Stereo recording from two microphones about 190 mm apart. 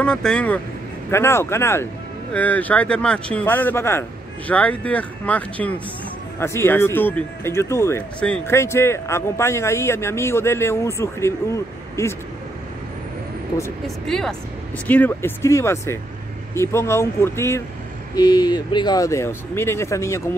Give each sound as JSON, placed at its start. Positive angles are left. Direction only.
{"t": 0.0, "sound": "speech", "side_deg": 5}
{"t": 13.8, "sound": "speech", "side_deg": 5}